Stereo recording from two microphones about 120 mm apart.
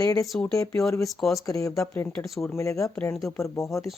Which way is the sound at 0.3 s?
5° left (ahead or behind).